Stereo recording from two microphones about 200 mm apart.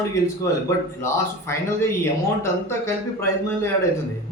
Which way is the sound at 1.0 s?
10° left (ahead or behind).